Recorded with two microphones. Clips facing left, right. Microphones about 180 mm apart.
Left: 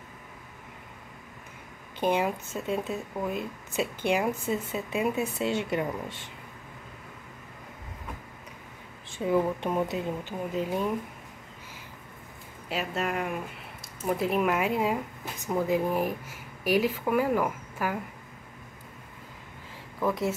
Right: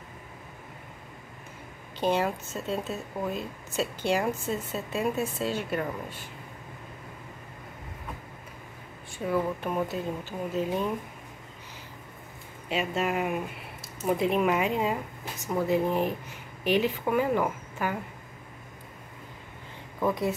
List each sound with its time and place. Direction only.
2.0 s speech: 10° left (ahead or behind)
6.0 s speech: 90° left
9.2 s speech: 20° left (ahead or behind)
12.6 s speech: centre (ahead or behind)
14.1 s speech: centre (ahead or behind)